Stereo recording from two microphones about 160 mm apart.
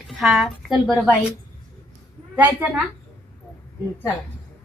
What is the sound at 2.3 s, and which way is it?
Cricket, 10° right (ahead or behind).